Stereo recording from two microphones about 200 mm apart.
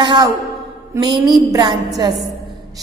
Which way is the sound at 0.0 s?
25° right (ahead or behind).